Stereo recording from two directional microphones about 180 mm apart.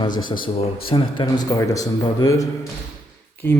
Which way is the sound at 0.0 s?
25° left (ahead or behind).